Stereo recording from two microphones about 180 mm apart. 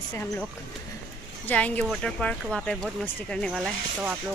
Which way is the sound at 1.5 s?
10° left (ahead or behind).